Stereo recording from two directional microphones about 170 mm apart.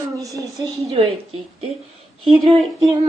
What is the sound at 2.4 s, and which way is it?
Female singing, centre (ahead or behind).